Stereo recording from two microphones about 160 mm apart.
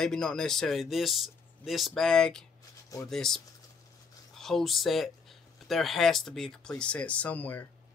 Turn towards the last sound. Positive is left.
turn(degrees=10)  # may be behind; listen again after turning